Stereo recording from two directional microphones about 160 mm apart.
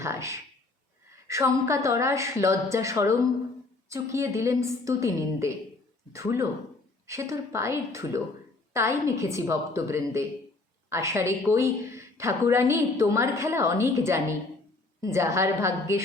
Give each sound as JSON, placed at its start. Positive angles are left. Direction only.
{"t": 0.0, "sound": "a woman's voice", "side_deg": -15}